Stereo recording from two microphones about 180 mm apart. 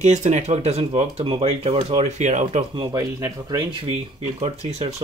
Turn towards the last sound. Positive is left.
turn(degrees=-35)  # may be behind; listen again after turning